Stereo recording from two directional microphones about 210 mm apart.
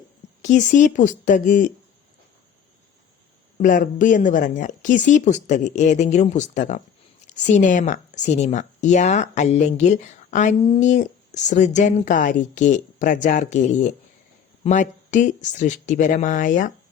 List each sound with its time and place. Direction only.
0.4 s speech: 35° left (ahead or behind)
3.6 s speech: 40° left (ahead or behind)